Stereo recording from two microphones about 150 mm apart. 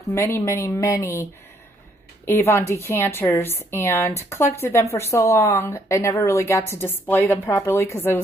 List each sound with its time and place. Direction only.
0.1 s speech: 15° left (ahead or behind)
2.2 s a woman's voice: 15° left (ahead or behind)